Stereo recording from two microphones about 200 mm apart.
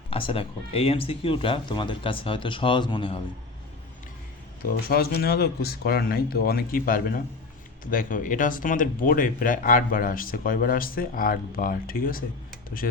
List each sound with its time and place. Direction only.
0.1 s speech: 25° left (ahead or behind)
4.6 s speech: 50° left (ahead or behind)